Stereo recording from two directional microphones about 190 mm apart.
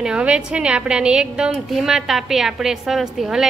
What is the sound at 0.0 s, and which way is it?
A woman's voice, 5° right (ahead or behind).